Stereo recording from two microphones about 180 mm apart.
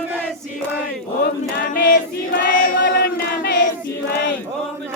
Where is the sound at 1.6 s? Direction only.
50° left (ahead or behind).